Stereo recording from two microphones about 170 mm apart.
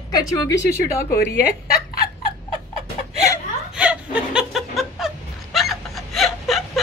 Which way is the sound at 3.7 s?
5° right (ahead or behind).